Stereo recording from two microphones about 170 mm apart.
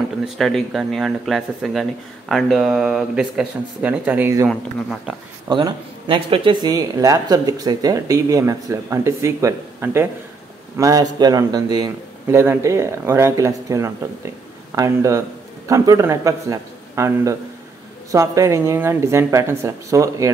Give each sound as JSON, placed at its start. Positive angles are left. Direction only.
{"t": 0.2, "sound": "speech", "side_deg": 0}
{"t": 5.5, "sound": "speech", "side_deg": -30}